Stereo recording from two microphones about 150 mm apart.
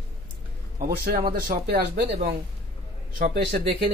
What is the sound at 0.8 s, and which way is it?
Speech, 75° right (ahead or behind).